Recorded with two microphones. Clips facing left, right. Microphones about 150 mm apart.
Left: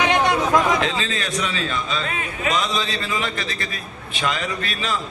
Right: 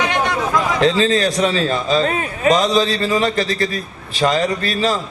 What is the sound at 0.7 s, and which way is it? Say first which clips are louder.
A man's voice: right 9 dB; 35° right (ahead or behind).